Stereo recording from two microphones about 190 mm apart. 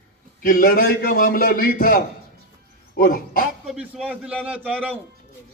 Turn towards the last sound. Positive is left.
turn(degrees=-5)  # may be behind; listen again after turning